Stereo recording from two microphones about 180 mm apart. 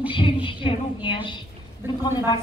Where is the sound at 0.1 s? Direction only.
30° left (ahead or behind).